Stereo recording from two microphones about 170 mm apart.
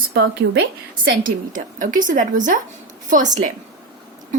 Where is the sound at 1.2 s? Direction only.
50° right (ahead or behind).